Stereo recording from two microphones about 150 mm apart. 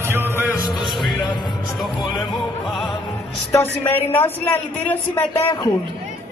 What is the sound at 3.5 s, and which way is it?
A woman's voice, 15° left (ahead or behind).